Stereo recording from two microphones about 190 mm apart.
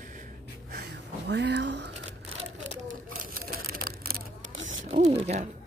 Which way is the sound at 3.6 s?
50° right (ahead or behind).